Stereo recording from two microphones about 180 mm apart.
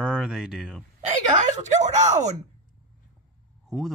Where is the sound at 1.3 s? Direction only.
40° right (ahead or behind).